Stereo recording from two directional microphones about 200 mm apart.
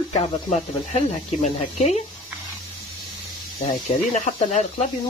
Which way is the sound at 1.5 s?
30° left (ahead or behind).